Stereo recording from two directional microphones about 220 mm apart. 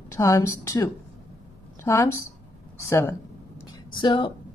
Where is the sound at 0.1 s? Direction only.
15° left (ahead or behind).